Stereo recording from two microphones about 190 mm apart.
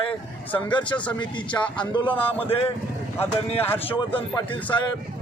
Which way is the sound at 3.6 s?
10° left (ahead or behind).